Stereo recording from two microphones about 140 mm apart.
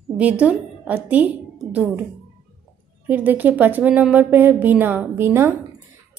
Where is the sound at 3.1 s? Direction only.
10° right (ahead or behind).